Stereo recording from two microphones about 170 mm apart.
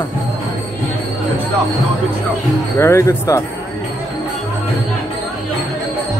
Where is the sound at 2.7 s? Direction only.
15° left (ahead or behind).